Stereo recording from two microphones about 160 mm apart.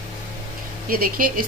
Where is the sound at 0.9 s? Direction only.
65° right (ahead or behind).